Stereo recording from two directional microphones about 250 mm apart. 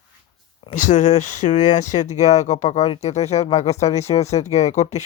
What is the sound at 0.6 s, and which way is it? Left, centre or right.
Speech, left.